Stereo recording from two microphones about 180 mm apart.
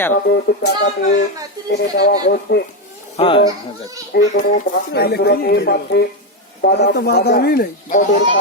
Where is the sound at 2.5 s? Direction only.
75° left (ahead or behind).